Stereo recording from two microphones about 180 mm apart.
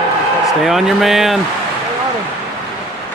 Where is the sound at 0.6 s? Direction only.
Centre (ahead or behind).